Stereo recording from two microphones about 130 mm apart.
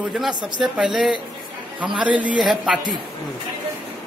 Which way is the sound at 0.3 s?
35° right (ahead or behind).